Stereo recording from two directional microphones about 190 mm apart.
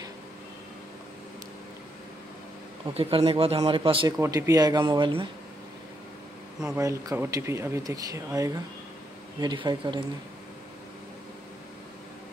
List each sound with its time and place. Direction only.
2.9 s speech: 30° right (ahead or behind)
4.2 s speech: 15° right (ahead or behind)
6.8 s speech: 15° right (ahead or behind)